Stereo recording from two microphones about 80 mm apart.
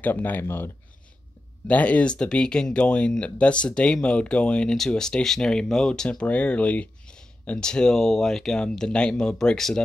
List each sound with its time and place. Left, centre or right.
0.0 s speech: left
1.7 s speech: centre